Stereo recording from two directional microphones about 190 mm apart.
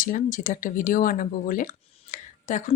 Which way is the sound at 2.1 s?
40° left (ahead or behind).